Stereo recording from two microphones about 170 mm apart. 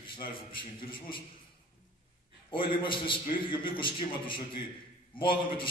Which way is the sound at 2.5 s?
30° left (ahead or behind).